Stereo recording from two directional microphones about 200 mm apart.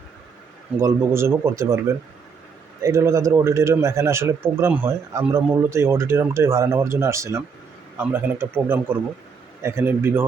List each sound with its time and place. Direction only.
0.8 s a man's voice: 15° right (ahead or behind)